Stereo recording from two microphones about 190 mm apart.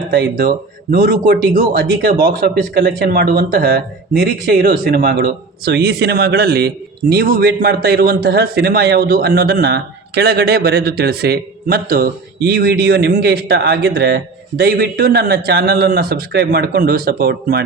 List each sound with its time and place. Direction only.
0.1 s speech: 55° right (ahead or behind)